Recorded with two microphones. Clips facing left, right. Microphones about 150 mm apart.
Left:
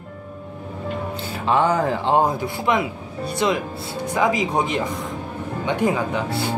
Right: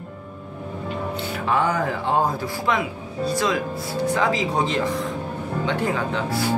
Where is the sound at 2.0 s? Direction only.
20° left (ahead or behind).